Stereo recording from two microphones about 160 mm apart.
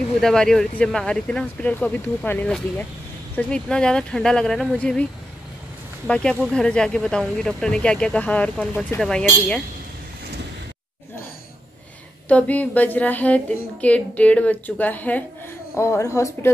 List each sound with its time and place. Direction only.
0.2 s speech: 5° left (ahead or behind)
6.0 s speech: 5° left (ahead or behind)
12.3 s a woman's voice: 10° left (ahead or behind)